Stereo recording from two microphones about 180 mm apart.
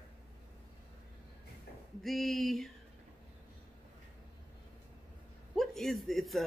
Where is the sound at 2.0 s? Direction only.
Centre (ahead or behind).